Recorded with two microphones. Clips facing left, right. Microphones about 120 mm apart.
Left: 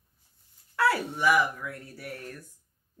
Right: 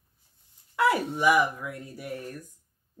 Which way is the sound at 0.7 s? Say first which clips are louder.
Right 2 dB; 15° right (ahead or behind).